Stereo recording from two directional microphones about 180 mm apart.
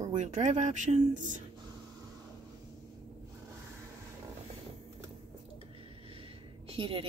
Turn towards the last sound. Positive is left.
turn(degrees=-30)  # may be behind; listen again after turning